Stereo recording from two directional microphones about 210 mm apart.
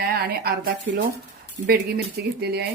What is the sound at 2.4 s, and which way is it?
Speech, 50° right (ahead or behind).